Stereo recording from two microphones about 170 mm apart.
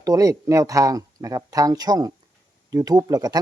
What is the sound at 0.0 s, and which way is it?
Speech, 20° right (ahead or behind).